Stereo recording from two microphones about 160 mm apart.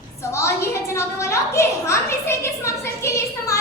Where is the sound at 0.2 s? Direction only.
20° left (ahead or behind).